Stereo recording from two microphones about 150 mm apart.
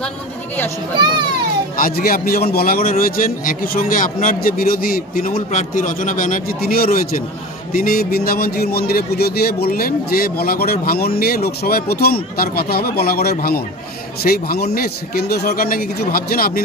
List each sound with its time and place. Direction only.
0.9 s a child's voice: 30° right (ahead or behind)
1.8 s a man's voice: 75° left (ahead or behind)
5.5 s a man's voice: 60° left (ahead or behind); by 16.6 s 85° left